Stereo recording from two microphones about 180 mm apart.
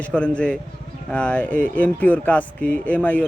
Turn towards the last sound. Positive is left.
turn(degrees=10)  # may be behind; listen again after turning